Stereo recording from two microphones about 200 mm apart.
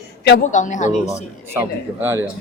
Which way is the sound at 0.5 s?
40° left (ahead or behind).